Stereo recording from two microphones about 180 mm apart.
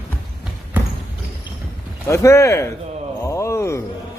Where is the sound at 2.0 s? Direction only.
15° left (ahead or behind).